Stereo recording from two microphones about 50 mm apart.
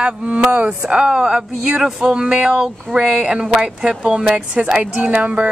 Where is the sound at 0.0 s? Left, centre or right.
Centre.